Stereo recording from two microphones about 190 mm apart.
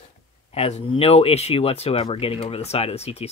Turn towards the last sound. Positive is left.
turn(degrees=35)  # may be behind; listen again after turning